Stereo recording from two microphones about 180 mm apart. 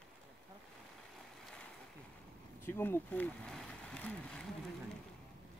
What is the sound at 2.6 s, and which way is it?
Speech, 10° left (ahead or behind).